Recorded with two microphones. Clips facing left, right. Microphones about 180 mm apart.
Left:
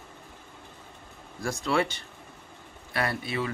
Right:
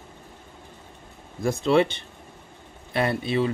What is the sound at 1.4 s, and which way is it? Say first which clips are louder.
Speech: right 7 dB; 25° right (ahead or behind).